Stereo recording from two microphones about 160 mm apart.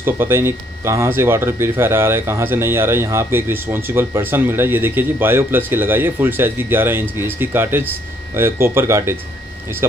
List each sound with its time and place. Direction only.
0.0 s speech: 15° right (ahead or behind)